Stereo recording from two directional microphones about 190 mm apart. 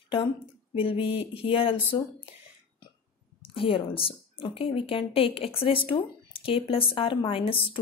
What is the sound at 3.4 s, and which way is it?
Speech, 25° left (ahead or behind).